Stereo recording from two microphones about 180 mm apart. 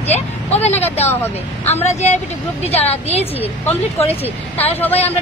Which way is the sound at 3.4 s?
10° left (ahead or behind).